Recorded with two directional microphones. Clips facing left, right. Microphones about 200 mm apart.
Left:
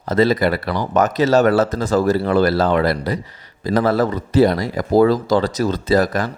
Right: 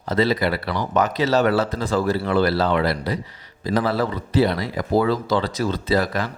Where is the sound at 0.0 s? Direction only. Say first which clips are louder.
Left 4 dB; 45° left (ahead or behind).